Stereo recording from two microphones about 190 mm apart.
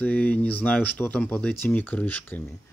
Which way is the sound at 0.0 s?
5° left (ahead or behind).